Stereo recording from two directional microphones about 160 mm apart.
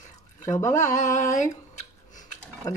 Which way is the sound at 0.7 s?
50° left (ahead or behind).